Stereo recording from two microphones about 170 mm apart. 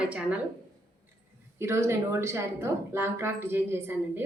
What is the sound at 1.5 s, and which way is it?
A woman's voice, 15° right (ahead or behind).